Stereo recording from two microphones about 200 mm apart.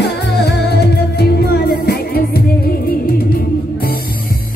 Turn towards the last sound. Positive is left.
turn(degrees=50)  # may be behind; listen again after turning